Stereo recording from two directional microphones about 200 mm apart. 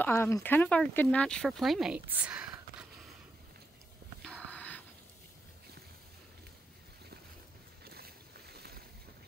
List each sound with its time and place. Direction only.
0.0 s speech: 15° left (ahead or behind); by 2.9 s 5° right (ahead or behind)
4.2 s a sound: 5° left (ahead or behind)
7.8 s boat: 50° right (ahead or behind)